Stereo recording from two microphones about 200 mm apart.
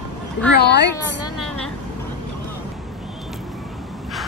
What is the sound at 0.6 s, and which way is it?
Speech, 55° left (ahead or behind).